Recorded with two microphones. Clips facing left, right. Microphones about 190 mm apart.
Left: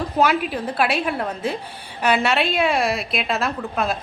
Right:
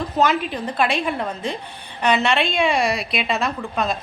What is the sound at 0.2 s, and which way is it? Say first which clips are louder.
A woman's voice: even; 10° left (ahead or behind).